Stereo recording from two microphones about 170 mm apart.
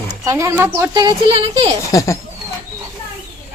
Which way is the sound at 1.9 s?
20° left (ahead or behind).